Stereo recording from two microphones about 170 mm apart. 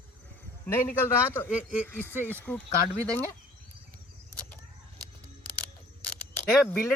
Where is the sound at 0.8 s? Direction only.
15° left (ahead or behind).